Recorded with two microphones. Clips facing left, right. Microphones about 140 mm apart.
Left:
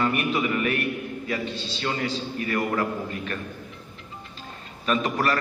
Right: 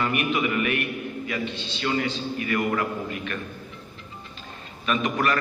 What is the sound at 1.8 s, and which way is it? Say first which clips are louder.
A man's voice: right 2 dB; 35° left (ahead or behind).